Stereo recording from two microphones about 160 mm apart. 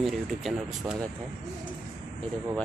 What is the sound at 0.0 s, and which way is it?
Speech, centre (ahead or behind).